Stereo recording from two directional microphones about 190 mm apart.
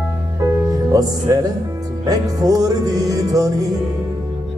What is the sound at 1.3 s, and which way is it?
Music, 20° right (ahead or behind).